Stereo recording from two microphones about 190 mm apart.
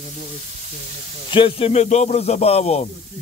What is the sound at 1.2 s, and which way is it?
Speech, 25° left (ahead or behind).